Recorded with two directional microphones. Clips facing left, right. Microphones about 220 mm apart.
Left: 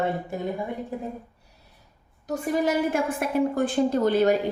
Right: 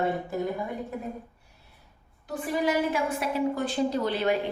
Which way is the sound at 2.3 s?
45° left (ahead or behind).